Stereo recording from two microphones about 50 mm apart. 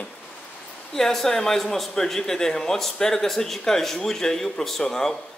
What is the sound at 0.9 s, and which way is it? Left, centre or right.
Speech, centre.